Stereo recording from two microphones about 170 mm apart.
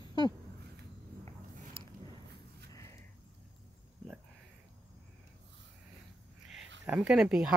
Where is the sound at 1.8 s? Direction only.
30° right (ahead or behind).